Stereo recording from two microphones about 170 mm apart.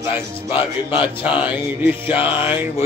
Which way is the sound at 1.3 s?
10° right (ahead or behind).